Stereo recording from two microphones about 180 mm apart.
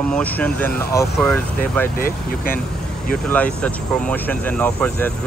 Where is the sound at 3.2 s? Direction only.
5° left (ahead or behind).